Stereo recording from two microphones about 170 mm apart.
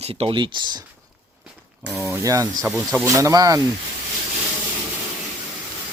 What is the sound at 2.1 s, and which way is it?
Speech, 20° right (ahead or behind).